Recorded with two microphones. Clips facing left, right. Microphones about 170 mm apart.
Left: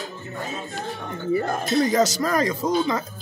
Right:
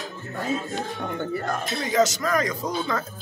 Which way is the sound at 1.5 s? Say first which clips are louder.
Left 6 dB; 35° left (ahead or behind).